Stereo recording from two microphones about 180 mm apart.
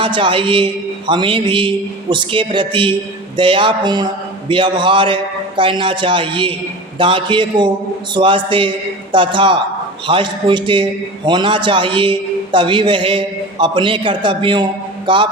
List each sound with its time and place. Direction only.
0.0 s a man's voice: 30° right (ahead or behind)